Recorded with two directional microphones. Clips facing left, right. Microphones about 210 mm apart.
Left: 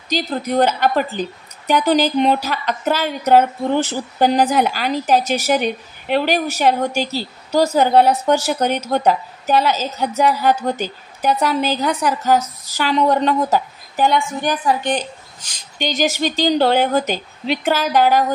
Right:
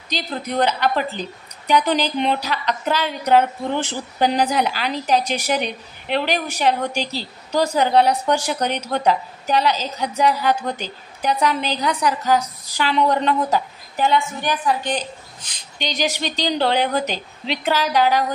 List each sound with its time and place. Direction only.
0.1 s a woman's voice: 45° left (ahead or behind)
15.4 s a woman's voice: 45° left (ahead or behind)